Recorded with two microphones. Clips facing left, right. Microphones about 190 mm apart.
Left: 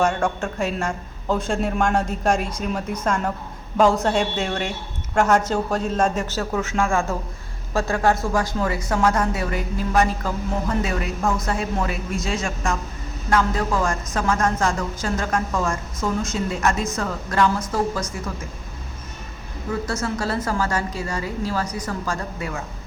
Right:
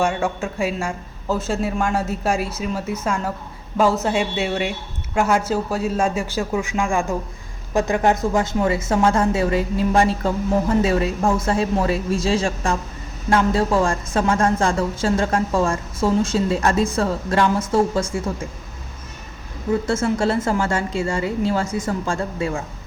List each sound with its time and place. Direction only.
0.0 s a man's voice: 10° right (ahead or behind); by 18.1 s 30° right (ahead or behind)
19.9 s speech: 25° right (ahead or behind)